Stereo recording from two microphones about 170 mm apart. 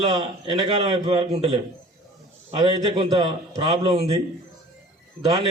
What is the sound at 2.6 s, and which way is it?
A man's voice, 30° right (ahead or behind).